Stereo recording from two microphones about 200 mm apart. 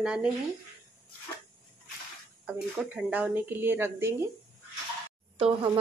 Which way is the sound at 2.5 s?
5° right (ahead or behind).